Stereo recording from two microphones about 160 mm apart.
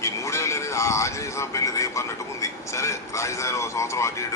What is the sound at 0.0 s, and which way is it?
A man's voice, 20° left (ahead or behind).